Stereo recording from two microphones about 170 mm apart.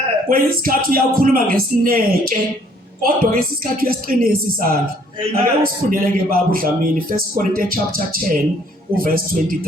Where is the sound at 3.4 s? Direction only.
60° right (ahead or behind).